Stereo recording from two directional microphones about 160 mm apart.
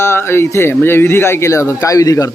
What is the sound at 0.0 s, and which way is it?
Speech, 15° left (ahead or behind).